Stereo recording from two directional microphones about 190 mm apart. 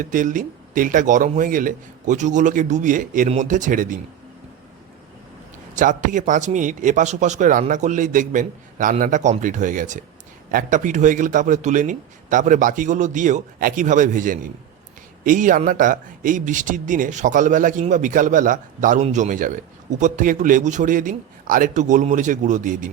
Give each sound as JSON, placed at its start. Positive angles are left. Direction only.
{"t": 0.0, "sound": "speech", "side_deg": -45}
{"t": 5.7, "sound": "a man's voice", "side_deg": -45}